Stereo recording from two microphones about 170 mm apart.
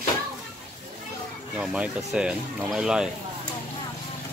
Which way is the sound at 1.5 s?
5° right (ahead or behind).